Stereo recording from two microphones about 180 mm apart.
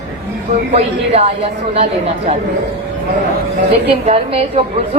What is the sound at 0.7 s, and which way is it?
A woman's voice, 35° right (ahead or behind).